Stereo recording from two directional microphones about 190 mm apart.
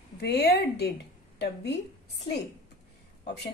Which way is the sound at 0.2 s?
60° left (ahead or behind).